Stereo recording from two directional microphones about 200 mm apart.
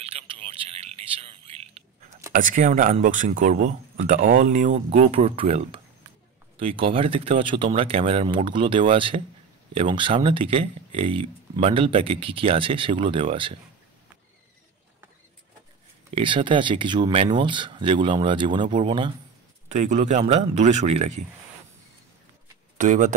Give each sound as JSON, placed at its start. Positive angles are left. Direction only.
{"t": 0.0, "sound": "a sound", "side_deg": -25}
{"t": 2.3, "sound": "speech", "side_deg": -40}
{"t": 16.2, "sound": "speech", "side_deg": -25}
{"t": 19.7, "sound": "speech", "side_deg": -35}
{"t": 22.8, "sound": "speech", "side_deg": -35}